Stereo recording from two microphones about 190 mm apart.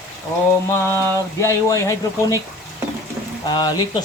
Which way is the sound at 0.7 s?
15° left (ahead or behind).